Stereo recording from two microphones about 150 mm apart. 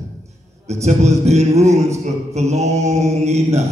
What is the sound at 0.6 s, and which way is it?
A man's voice, 45° right (ahead or behind).